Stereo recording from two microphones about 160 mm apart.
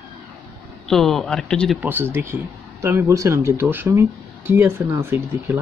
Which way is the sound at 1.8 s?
10° right (ahead or behind).